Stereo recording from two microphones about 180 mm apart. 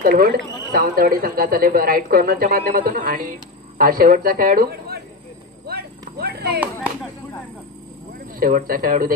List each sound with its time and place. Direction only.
0.0 s speech: 55° right (ahead or behind)
5.7 s a sound: 60° right (ahead or behind)
8.4 s speech: 55° right (ahead or behind)